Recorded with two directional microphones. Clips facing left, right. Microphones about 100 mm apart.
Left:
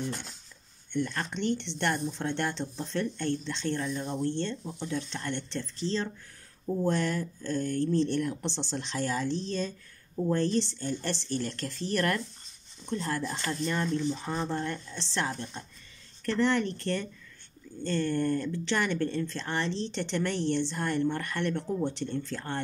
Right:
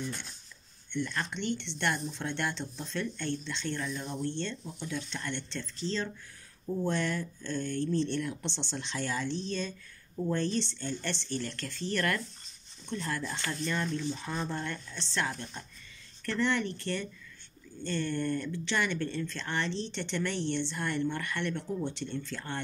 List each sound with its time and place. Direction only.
0.9 s speech: 40° left (ahead or behind)